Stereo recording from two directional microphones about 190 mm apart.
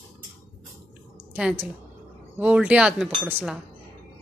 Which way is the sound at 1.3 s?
5° right (ahead or behind).